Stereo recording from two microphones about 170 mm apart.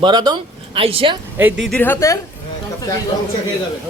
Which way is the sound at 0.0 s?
25° right (ahead or behind).